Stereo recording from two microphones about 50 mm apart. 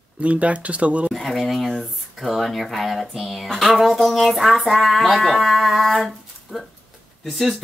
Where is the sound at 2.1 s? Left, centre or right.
Centre.